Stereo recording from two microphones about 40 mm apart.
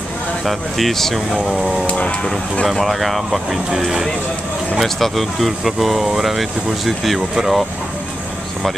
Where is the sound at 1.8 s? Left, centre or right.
Left.